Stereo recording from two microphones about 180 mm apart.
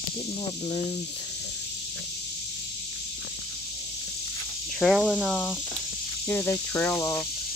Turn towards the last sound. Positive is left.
turn(degrees=15)  # may be behind; listen again after turning